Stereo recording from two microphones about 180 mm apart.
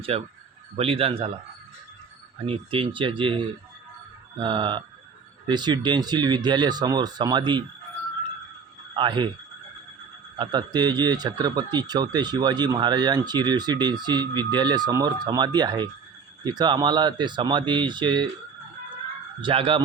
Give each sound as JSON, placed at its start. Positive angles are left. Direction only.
{"t": 0.1, "sound": "speech", "side_deg": -35}
{"t": 2.5, "sound": "speech", "side_deg": -30}
{"t": 9.0, "sound": "speech", "side_deg": -25}
{"t": 10.3, "sound": "speech", "side_deg": -25}
{"t": 19.4, "sound": "speech", "side_deg": -30}